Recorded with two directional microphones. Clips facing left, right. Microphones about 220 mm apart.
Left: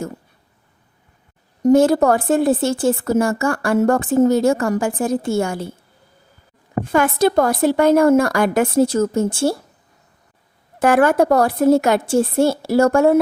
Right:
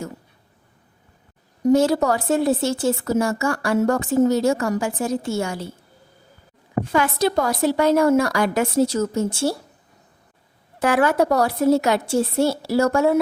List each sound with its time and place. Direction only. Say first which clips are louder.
1.6 s a woman's voice: left 4 dB; 50° left (ahead or behind)
6.9 s a woman's voice: left 5 dB; 50° left (ahead or behind)
10.8 s a woman's voice: left 4 dB; 50° left (ahead or behind)